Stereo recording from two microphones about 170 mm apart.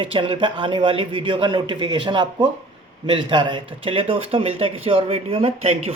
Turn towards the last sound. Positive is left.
turn(degrees=-35)  # may be behind; listen again after turning